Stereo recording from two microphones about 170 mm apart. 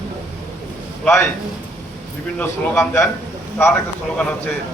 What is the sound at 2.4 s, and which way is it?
Speech, 15° left (ahead or behind).